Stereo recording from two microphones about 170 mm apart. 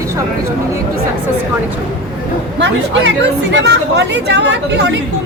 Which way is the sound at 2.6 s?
90° right.